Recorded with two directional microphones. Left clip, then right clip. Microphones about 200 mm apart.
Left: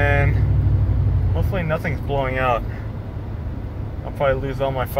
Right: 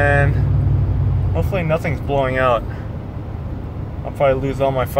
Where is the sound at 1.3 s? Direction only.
30° right (ahead or behind).